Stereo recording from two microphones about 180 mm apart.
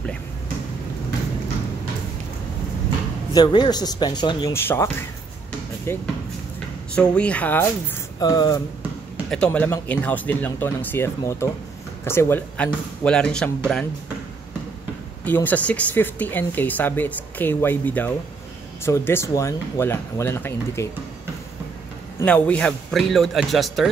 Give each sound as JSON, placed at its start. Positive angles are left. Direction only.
{"t": 3.3, "sound": "speech", "side_deg": 25}
{"t": 4.6, "sound": "speech", "side_deg": 15}
{"t": 5.9, "sound": "speech", "side_deg": 15}
{"t": 8.2, "sound": "speech", "side_deg": 20}
{"t": 9.3, "sound": "speech", "side_deg": 5}
{"t": 15.2, "sound": "speech", "side_deg": 10}
{"t": 22.2, "sound": "a man's voice", "side_deg": 5}